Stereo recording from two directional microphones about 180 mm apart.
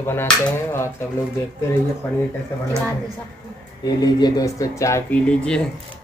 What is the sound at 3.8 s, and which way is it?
Speech, 20° left (ahead or behind).